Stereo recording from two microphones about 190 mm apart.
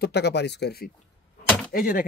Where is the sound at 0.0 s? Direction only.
60° left (ahead or behind).